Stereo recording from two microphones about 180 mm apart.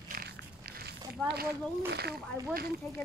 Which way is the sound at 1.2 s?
10° left (ahead or behind).